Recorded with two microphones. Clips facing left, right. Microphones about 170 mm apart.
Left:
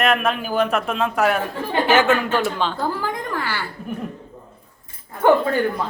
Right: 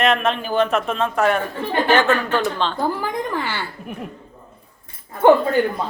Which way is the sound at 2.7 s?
15° right (ahead or behind).